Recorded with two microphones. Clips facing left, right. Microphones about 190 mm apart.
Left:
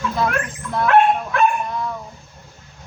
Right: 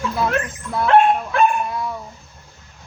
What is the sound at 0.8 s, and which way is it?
Dog, 30° right (ahead or behind).